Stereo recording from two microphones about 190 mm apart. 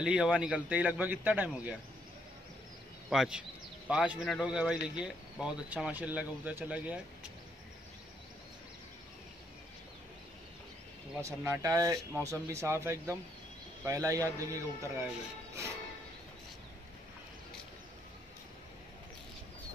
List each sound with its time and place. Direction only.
0.0 s speech: 5° right (ahead or behind)
3.1 s a man's voice: 5° right (ahead or behind)
11.1 s speech: 15° right (ahead or behind)